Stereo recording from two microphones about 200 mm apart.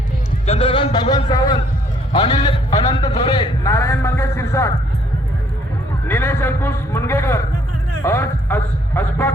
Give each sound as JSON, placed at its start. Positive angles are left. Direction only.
{"t": 0.4, "sound": "a sound", "side_deg": 30}
{"t": 2.1, "sound": "a man's voice", "side_deg": 30}
{"t": 3.6, "sound": "a man's voice", "side_deg": 15}
{"t": 6.1, "sound": "a man's voice", "side_deg": 10}